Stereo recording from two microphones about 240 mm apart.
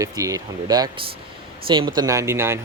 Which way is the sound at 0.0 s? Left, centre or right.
Centre.